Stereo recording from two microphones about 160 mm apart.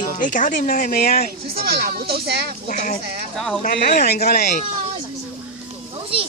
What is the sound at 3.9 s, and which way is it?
Speech, 75° left (ahead or behind).